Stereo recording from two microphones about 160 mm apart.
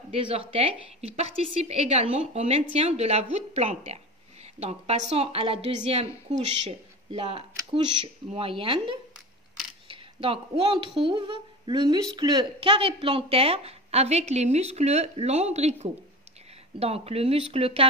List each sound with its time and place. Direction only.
0.1 s a woman's voice: 35° right (ahead or behind)